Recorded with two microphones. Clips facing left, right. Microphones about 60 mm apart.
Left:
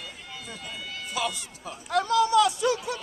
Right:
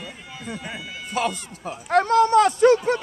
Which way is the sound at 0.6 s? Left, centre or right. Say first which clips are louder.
Right 3 dB; right.